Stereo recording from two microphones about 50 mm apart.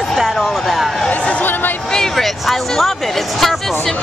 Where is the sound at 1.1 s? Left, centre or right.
Left.